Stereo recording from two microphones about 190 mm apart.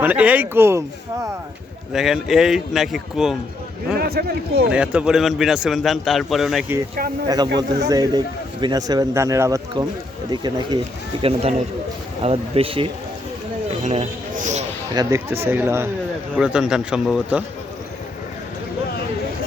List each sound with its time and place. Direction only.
0.0 s speech: 10° right (ahead or behind)
1.9 s a man's voice: centre (ahead or behind)
3.9 s a man's voice: 55° right (ahead or behind)
4.7 s a man's voice: 5° right (ahead or behind)
7.9 s speech: 20° right (ahead or behind); by 14.6 s 40° right (ahead or behind)
14.9 s a man's voice: 15° right (ahead or behind)